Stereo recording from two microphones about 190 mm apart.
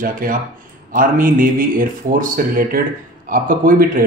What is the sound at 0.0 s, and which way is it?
A man's voice, 45° right (ahead or behind).